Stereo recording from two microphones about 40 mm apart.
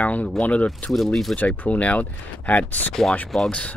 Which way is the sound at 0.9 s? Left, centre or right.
Centre.